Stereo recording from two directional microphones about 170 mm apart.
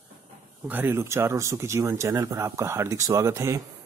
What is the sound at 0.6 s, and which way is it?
Speech, 10° right (ahead or behind).